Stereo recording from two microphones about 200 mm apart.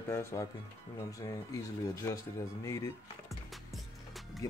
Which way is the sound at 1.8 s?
15° left (ahead or behind).